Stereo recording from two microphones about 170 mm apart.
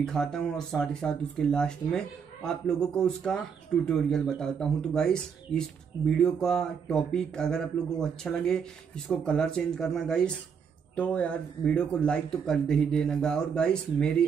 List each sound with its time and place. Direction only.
0.0 s speech: 5° left (ahead or behind)